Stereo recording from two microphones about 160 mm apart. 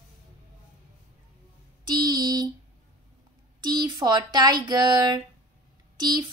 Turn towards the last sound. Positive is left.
turn(degrees=-25)  # may be behind; listen again after turning